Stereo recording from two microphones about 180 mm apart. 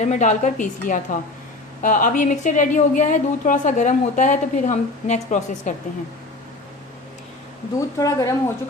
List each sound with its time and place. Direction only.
0.0 s a woman's voice: 40° left (ahead or behind)
7.8 s speech: 20° left (ahead or behind)